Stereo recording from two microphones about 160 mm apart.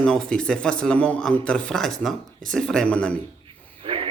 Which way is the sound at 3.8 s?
35° right (ahead or behind).